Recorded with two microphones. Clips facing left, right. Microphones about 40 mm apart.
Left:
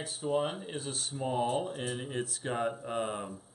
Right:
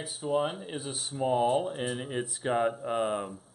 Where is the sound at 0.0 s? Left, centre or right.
Centre.